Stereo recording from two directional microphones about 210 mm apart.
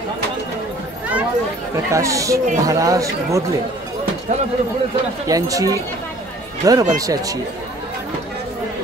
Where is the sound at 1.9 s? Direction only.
15° right (ahead or behind).